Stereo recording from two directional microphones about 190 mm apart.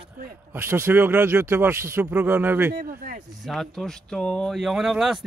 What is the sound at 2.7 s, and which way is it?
Speech, 50° right (ahead or behind).